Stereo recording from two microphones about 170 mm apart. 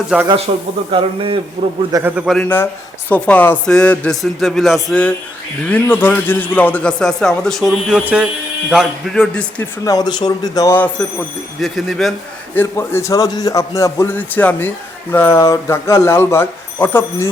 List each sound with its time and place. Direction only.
0.1 s a man's voice: 5° right (ahead or behind)
0.5 s speech: 40° right (ahead or behind)
1.9 s a man's voice: 15° right (ahead or behind)
2.4 s a man's voice: 10° left (ahead or behind)
9.8 s speech: 20° left (ahead or behind)
11.6 s a man's voice: centre (ahead or behind)
12.5 s a man's voice: 15° left (ahead or behind)